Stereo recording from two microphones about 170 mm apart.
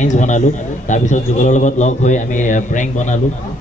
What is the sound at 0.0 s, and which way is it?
A man's voice, 45° left (ahead or behind).